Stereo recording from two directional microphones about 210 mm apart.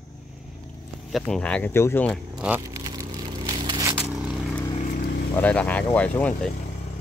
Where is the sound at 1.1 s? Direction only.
5° left (ahead or behind).